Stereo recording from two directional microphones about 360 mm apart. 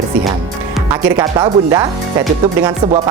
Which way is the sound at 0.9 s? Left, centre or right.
Centre.